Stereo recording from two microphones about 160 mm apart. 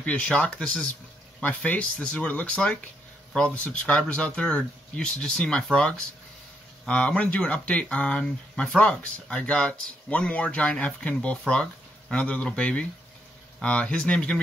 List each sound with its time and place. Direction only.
0.0 s speech: 5° left (ahead or behind)